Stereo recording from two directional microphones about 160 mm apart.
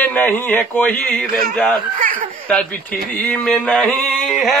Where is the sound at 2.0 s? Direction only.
60° right (ahead or behind).